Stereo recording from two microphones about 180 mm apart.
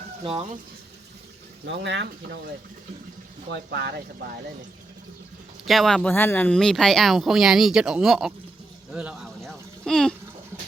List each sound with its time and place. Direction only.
1.6 s speech: 75° right (ahead or behind)
3.5 s speech: 65° right (ahead or behind)
5.6 s speech: centre (ahead or behind)
8.9 s a sound: 5° right (ahead or behind)